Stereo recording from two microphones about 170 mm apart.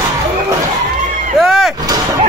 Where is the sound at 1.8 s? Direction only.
20° right (ahead or behind).